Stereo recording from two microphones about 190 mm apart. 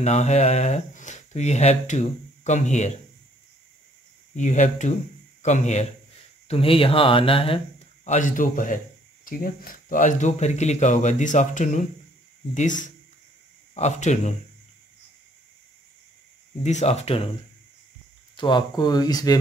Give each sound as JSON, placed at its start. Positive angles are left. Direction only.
{"t": 0.0, "sound": "speech", "side_deg": 35}
{"t": 4.4, "sound": "a man's voice", "side_deg": 40}
{"t": 16.6, "sound": "speech", "side_deg": 35}
{"t": 18.3, "sound": "speech", "side_deg": 25}